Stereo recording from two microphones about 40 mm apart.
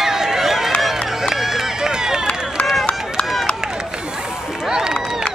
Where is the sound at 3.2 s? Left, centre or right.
Left.